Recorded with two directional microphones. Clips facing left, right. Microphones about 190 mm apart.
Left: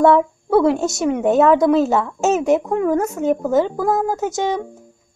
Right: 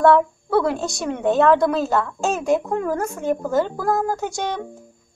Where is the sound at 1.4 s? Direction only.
20° left (ahead or behind).